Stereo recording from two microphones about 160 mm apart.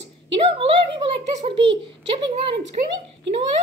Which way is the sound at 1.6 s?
30° right (ahead or behind).